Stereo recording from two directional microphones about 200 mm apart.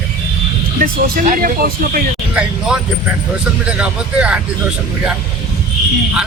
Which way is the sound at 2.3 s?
5° right (ahead or behind).